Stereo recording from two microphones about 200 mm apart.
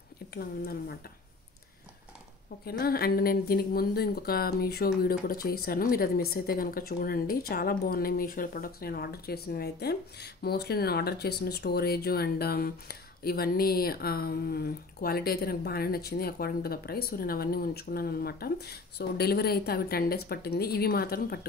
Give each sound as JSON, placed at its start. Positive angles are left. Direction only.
{"t": 0.3, "sound": "speech", "side_deg": 50}
{"t": 2.6, "sound": "speech", "side_deg": 50}